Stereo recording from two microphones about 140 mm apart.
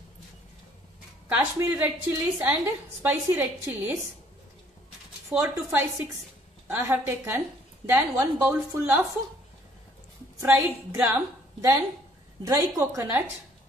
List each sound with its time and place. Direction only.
1.3 s a woman's voice: 15° right (ahead or behind)
5.3 s a woman's voice: 10° right (ahead or behind)
10.4 s a woman's voice: 15° right (ahead or behind)